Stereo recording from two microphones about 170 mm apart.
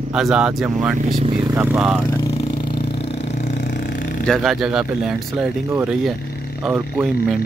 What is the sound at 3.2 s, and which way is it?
Vehicle, 40° left (ahead or behind).